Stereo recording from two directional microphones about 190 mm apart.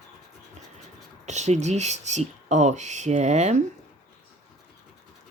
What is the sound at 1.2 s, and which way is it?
Speech, 35° right (ahead or behind).